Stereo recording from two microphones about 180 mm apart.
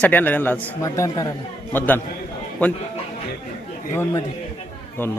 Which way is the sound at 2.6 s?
5° left (ahead or behind).